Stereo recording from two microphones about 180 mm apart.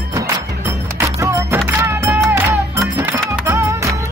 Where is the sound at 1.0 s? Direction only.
15° right (ahead or behind).